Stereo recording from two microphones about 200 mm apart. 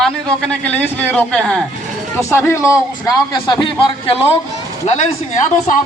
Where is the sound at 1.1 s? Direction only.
5° left (ahead or behind); by 5.0 s 35° left (ahead or behind).